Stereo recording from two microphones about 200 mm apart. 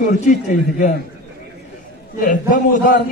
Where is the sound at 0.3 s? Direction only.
40° left (ahead or behind).